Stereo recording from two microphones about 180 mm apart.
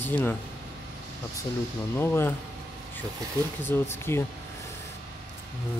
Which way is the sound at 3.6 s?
15° left (ahead or behind).